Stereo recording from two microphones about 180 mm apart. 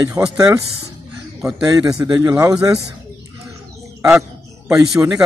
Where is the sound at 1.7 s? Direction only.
20° right (ahead or behind).